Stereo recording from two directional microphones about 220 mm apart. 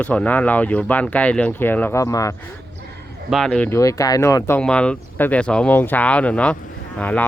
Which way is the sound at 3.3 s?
5° left (ahead or behind).